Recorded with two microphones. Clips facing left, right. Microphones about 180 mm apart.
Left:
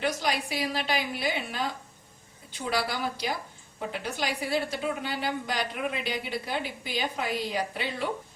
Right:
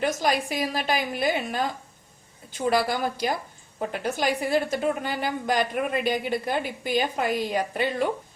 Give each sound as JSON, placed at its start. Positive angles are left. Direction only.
{"t": 0.0, "sound": "a woman's voice", "side_deg": -45}